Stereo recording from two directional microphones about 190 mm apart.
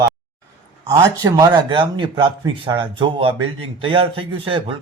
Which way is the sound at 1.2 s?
20° right (ahead or behind).